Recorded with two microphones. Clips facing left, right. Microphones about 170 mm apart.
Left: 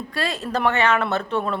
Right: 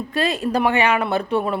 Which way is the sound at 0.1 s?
20° right (ahead or behind).